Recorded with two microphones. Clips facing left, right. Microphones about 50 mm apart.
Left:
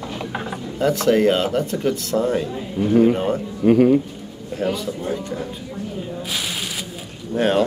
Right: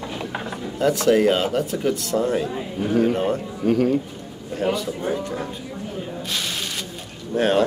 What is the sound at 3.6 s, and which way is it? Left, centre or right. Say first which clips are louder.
Speech: left 5 dB; centre.